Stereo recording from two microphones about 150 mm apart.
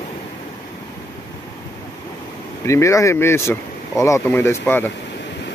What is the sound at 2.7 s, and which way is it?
Speech, 20° left (ahead or behind).